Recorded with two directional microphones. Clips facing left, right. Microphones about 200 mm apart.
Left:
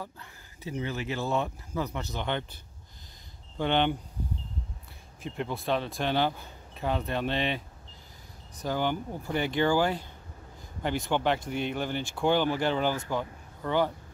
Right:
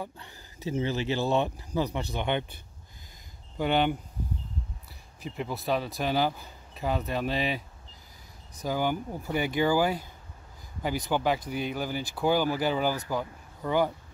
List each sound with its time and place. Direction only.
0.0 s speech: 25° right (ahead or behind)
3.5 s speech: 10° right (ahead or behind)
5.2 s speech: 5° right (ahead or behind)
8.6 s speech: 10° right (ahead or behind)